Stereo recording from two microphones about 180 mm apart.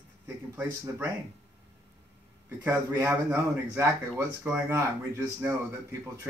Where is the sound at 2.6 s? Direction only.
10° right (ahead or behind).